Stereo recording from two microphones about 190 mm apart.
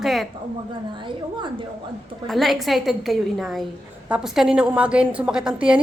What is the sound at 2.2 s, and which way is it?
A woman's voice, centre (ahead or behind).